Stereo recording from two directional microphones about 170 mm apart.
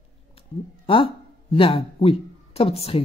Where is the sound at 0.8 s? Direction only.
35° left (ahead or behind).